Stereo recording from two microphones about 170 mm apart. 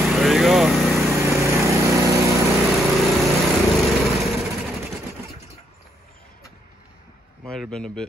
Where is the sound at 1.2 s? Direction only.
15° right (ahead or behind).